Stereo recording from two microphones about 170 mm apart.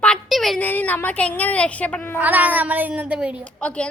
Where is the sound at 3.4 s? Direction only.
5° left (ahead or behind).